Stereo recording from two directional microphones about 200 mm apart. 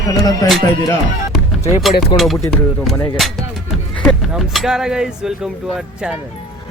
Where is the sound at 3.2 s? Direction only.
Centre (ahead or behind).